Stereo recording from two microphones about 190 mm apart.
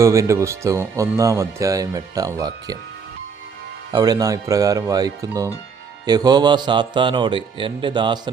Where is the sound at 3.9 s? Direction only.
20° right (ahead or behind).